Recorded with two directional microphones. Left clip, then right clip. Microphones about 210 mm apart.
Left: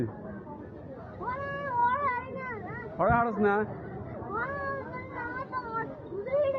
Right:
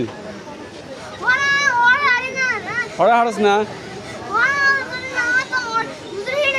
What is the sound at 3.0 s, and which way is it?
Speech, 40° right (ahead or behind).